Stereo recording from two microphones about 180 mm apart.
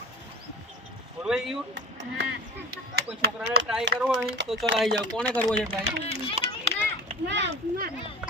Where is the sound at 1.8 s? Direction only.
90° right.